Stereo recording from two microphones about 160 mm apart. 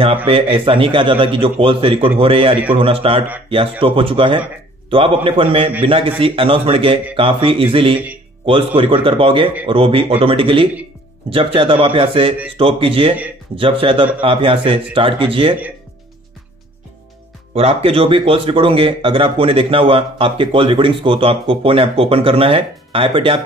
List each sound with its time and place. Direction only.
0.3 s speech: 35° right (ahead or behind)
17.6 s speech: 40° right (ahead or behind)